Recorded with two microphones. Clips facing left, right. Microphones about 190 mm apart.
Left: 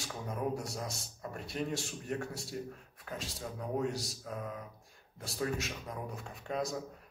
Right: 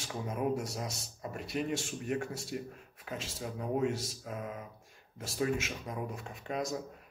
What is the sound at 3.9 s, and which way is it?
Mantra, 70° left (ahead or behind).